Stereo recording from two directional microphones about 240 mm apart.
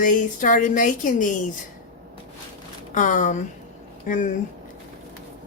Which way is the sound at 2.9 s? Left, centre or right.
Left.